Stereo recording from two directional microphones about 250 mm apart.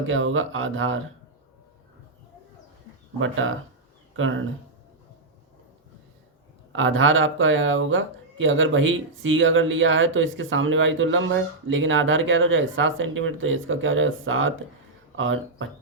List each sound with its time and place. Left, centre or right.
0.0 s speech: right
3.2 s speech: right
6.7 s speech: right